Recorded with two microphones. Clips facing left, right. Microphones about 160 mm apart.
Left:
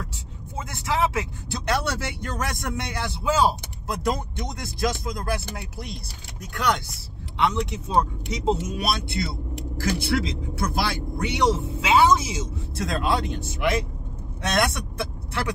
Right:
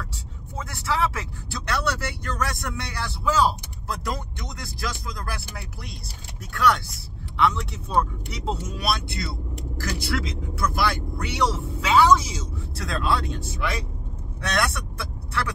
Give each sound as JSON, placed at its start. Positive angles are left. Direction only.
{"t": 0.7, "sound": "speech", "side_deg": 20}